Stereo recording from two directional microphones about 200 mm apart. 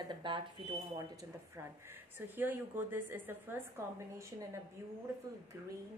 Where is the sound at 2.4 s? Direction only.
10° right (ahead or behind).